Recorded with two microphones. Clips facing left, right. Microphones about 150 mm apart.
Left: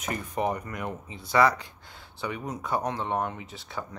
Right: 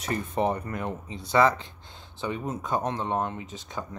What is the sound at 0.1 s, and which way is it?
Speech, 25° right (ahead or behind).